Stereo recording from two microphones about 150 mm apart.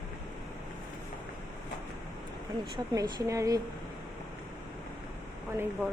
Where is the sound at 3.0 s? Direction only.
20° right (ahead or behind).